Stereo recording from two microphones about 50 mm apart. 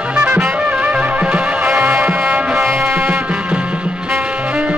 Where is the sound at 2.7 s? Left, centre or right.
Right.